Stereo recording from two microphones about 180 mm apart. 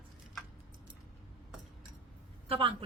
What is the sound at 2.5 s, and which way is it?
Speech, 30° right (ahead or behind).